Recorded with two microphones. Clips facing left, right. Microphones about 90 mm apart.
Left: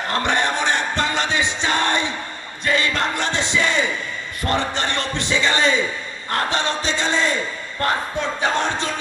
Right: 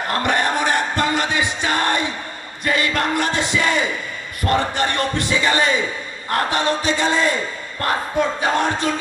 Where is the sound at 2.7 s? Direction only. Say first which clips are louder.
Right 1 dB; 25° left (ahead or behind).